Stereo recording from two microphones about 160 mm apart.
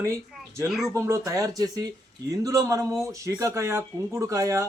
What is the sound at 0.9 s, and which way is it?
Speech, 20° right (ahead or behind).